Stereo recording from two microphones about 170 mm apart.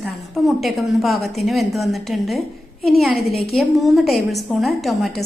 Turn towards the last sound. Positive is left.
turn(degrees=0)  # may be behind; listen again after turning